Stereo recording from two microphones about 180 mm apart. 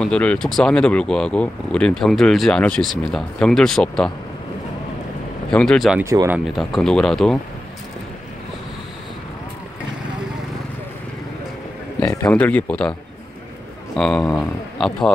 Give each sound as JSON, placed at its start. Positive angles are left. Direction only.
{"t": 0.0, "sound": "speech", "side_deg": 5}
{"t": 5.5, "sound": "speech", "side_deg": 5}
{"t": 6.0, "sound": "speech", "side_deg": -15}
{"t": 12.3, "sound": "speech", "side_deg": 10}
{"t": 13.9, "sound": "speech", "side_deg": 5}